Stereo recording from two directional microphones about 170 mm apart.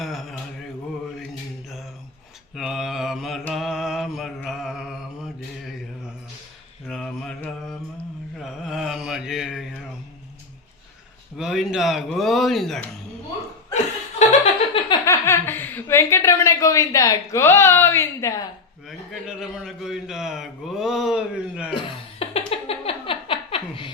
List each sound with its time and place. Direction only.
0.0 s mantra: centre (ahead or behind)
2.6 s mantra: centre (ahead or behind)
6.8 s mantra: 5° left (ahead or behind)
11.3 s a man's voice: 5° right (ahead or behind)
13.7 s chuckle: 45° left (ahead or behind)
14.8 s speech: 15° left (ahead or behind)
18.9 s a man's voice: centre (ahead or behind)
21.8 s laughter: 35° left (ahead or behind)